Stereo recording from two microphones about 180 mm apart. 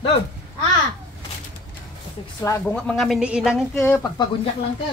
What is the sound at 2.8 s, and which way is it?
Speech, 5° left (ahead or behind).